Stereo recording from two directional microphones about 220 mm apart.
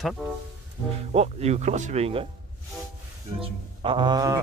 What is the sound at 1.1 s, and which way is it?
Speech, 30° right (ahead or behind).